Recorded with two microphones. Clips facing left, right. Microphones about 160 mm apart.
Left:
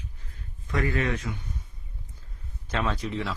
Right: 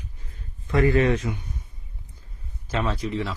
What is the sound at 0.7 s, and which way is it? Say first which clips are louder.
Speech: right 7 dB; 30° right (ahead or behind).